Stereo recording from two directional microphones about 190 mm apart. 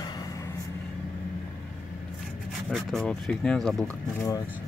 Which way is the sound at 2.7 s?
Centre (ahead or behind).